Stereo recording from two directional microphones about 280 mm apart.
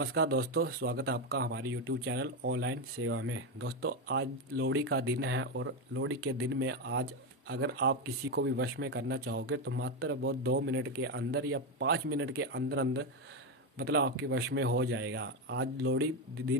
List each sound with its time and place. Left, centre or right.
0.0 s speech: right